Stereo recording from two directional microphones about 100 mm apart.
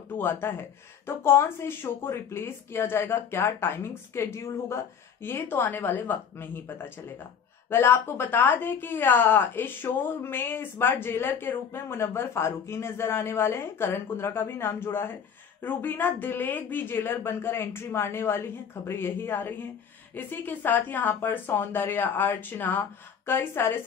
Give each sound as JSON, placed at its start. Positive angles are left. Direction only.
{"t": 0.2, "sound": "a woman's voice", "side_deg": 20}